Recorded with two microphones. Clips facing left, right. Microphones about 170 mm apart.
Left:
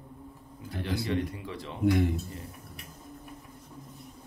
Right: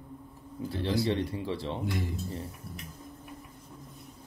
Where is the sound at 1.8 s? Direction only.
60° left (ahead or behind).